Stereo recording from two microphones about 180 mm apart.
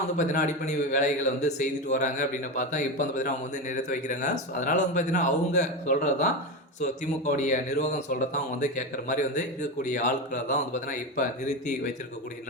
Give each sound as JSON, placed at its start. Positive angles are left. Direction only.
{"t": 0.2, "sound": "a man's voice", "side_deg": 45}
{"t": 7.3, "sound": "a man's voice", "side_deg": 45}